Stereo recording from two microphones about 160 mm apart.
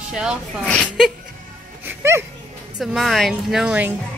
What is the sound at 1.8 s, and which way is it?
Music, 15° right (ahead or behind).